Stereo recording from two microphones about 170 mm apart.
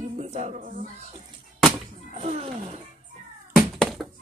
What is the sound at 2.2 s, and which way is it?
Music, 35° right (ahead or behind).